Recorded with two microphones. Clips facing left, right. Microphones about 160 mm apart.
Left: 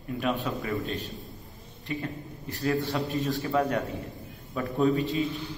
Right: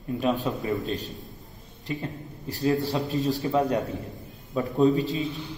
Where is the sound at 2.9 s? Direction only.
20° right (ahead or behind).